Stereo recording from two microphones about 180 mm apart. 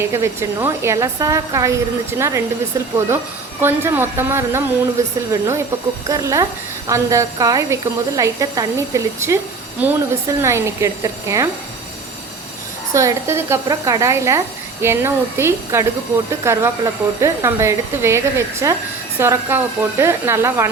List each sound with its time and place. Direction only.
0.1 s a woman's voice: 15° right (ahead or behind)
3.6 s a woman's voice: 10° right (ahead or behind)
12.9 s a woman's voice: 15° right (ahead or behind)